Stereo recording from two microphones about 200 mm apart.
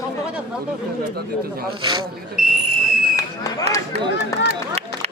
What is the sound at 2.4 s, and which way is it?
Speech, centre (ahead or behind).